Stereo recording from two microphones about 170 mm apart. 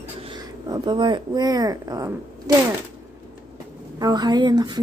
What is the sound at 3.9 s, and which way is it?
Speech, 25° right (ahead or behind).